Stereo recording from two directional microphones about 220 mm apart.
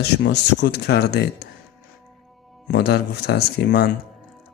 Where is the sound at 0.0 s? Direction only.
50° left (ahead or behind).